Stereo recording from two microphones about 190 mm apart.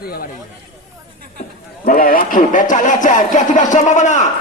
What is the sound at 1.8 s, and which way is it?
Speech, 50° left (ahead or behind).